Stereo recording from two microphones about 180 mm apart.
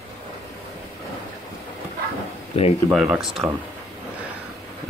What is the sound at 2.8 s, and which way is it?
Speech, 5° right (ahead or behind).